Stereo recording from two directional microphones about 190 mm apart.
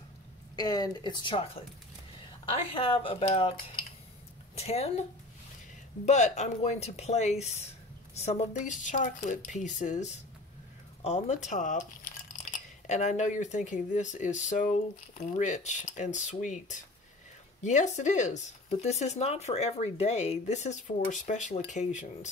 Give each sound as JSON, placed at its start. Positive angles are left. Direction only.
{"t": 0.6, "sound": "speech", "side_deg": 20}
{"t": 4.6, "sound": "speech", "side_deg": 35}
{"t": 6.0, "sound": "speech", "side_deg": 35}